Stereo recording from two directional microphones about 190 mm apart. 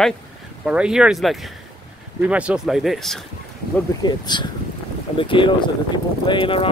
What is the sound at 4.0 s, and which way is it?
Speech, 25° left (ahead or behind).